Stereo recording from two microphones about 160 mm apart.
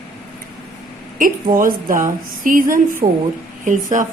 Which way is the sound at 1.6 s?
60° right (ahead or behind).